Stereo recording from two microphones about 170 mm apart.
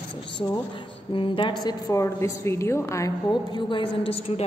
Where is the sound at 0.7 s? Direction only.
30° left (ahead or behind).